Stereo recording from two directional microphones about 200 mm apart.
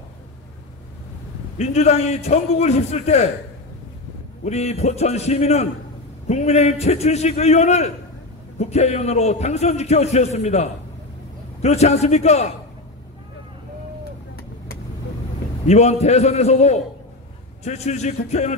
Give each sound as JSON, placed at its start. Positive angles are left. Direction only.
{"t": 1.6, "sound": "a man's voice", "side_deg": 35}
{"t": 4.5, "sound": "a man's voice", "side_deg": 35}
{"t": 15.6, "sound": "a man's voice", "side_deg": 35}